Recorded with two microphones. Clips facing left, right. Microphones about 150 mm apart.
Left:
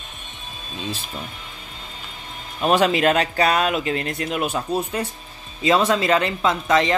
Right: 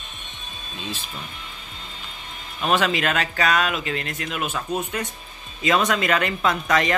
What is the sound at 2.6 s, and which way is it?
Speech, 35° left (ahead or behind).